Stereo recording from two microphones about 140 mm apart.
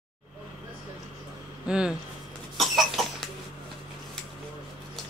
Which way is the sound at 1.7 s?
5° right (ahead or behind).